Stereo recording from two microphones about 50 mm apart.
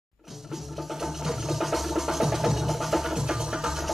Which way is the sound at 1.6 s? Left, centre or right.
Centre.